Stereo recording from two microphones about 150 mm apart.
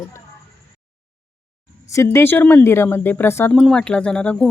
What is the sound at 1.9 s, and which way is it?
Speech, 20° left (ahead or behind).